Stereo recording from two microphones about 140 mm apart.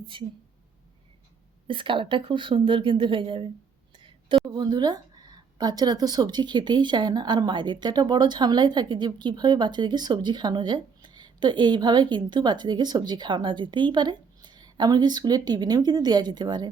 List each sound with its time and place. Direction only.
0.0 s a woman's voice: 35° right (ahead or behind)
1.6 s speech: 35° right (ahead or behind)
3.9 s a sound: 40° right (ahead or behind)
4.5 s speech: 30° right (ahead or behind)